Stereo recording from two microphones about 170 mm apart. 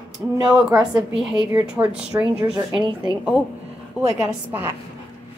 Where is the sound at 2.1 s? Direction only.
20° right (ahead or behind).